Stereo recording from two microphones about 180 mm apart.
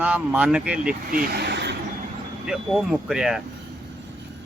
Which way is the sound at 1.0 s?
60° right (ahead or behind).